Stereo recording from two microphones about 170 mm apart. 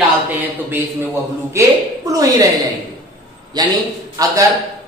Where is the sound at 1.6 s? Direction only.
15° right (ahead or behind).